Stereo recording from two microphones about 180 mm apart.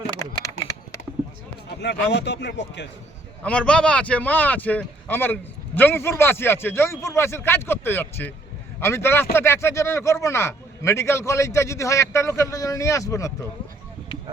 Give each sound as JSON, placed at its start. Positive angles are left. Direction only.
{"t": 0.2, "sound": "a sound", "side_deg": 20}
{"t": 1.8, "sound": "speech", "side_deg": 70}
{"t": 3.4, "sound": "speech", "side_deg": 5}